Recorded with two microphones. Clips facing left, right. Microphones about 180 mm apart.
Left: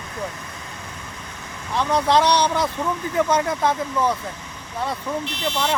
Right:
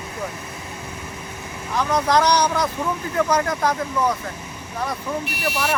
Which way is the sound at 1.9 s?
25° left (ahead or behind).